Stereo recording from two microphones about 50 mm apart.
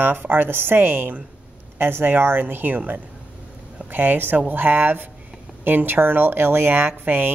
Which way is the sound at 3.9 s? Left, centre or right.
Right.